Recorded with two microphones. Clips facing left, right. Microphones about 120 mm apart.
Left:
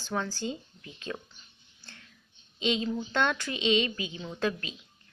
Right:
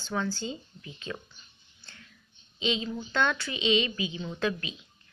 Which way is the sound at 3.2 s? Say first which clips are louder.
Right 1 dB; 45° left (ahead or behind).